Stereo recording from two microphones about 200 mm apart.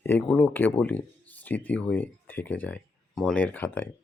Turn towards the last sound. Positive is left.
turn(degrees=10)  # may be behind; listen again after turning